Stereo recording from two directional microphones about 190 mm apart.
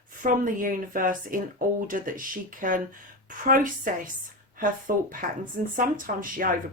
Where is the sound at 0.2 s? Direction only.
45° right (ahead or behind).